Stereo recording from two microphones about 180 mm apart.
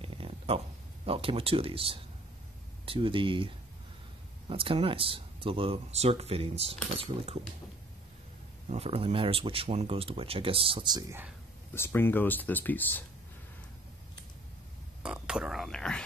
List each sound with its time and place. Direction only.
0.0 s a sound: 30° right (ahead or behind)
1.0 s speech: 30° right (ahead or behind)
8.6 s speech: 35° right (ahead or behind); by 11.2 s 15° right (ahead or behind)
11.7 s speech: 10° left (ahead or behind)
15.0 s speech: 5° right (ahead or behind)